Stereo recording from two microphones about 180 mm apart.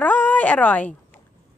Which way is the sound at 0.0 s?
10° left (ahead or behind).